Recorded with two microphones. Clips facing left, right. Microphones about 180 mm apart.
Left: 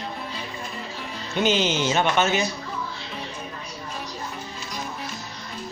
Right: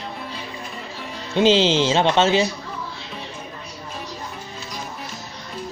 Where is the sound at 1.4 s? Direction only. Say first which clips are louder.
Right 6 dB; 30° right (ahead or behind).